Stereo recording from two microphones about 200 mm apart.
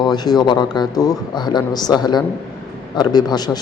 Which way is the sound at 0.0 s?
20° left (ahead or behind).